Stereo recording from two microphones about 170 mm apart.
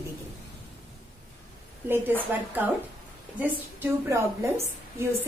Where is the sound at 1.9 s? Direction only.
10° right (ahead or behind).